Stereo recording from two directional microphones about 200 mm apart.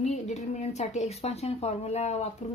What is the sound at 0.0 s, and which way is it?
A woman's voice, 35° left (ahead or behind).